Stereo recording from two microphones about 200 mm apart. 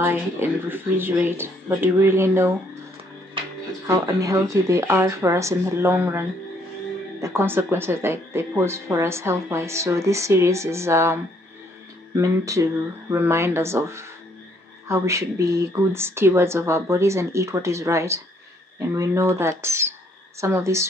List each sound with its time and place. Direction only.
0.0 s speech: 10° right (ahead or behind)
3.8 s speech: 15° right (ahead or behind)